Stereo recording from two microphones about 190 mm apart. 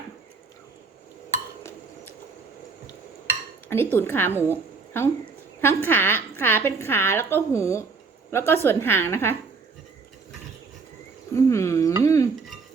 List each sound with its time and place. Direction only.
3.7 s a woman's voice: 10° left (ahead or behind)
11.3 s a sound: 15° left (ahead or behind)
12.0 s dishes: 15° left (ahead or behind)